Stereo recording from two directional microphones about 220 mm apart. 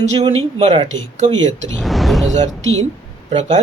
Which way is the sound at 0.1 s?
25° right (ahead or behind).